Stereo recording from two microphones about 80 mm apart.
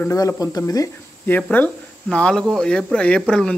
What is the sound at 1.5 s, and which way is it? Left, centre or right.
Speech, centre.